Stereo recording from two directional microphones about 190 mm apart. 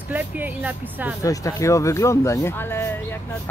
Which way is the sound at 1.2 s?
15° left (ahead or behind).